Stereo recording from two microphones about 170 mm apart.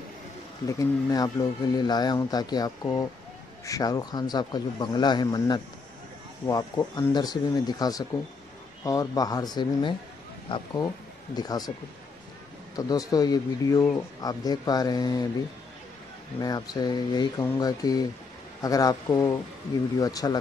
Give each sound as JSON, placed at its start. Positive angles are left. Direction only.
{"t": 0.7, "sound": "speech", "side_deg": 20}
{"t": 12.7, "sound": "speech", "side_deg": 20}
{"t": 16.3, "sound": "speech", "side_deg": 25}